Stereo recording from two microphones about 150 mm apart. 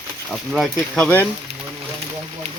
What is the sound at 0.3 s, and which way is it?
Speech, centre (ahead or behind).